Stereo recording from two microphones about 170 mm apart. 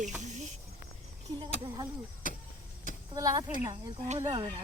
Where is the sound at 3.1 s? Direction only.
20° right (ahead or behind).